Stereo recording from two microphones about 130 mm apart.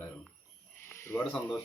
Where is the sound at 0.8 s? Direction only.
20° left (ahead or behind).